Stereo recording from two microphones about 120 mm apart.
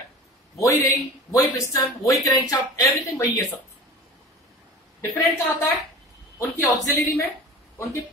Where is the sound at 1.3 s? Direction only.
25° left (ahead or behind).